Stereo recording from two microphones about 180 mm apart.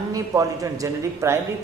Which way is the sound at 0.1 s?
20° right (ahead or behind).